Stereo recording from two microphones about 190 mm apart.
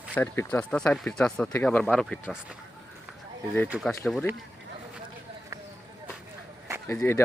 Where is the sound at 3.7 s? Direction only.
Centre (ahead or behind).